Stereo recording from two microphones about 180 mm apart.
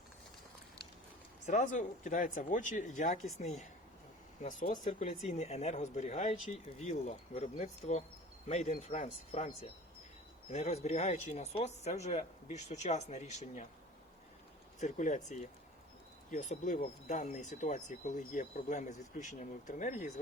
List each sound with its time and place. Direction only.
1.5 s speech: 45° left (ahead or behind)
14.8 s speech: 45° left (ahead or behind)